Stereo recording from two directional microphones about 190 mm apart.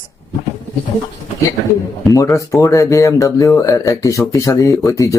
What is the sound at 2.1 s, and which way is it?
Speech, 15° left (ahead or behind).